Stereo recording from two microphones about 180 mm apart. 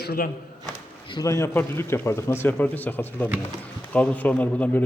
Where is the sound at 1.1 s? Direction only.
20° left (ahead or behind).